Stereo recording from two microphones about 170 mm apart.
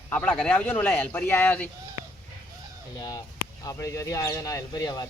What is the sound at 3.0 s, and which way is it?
Speech, 20° left (ahead or behind).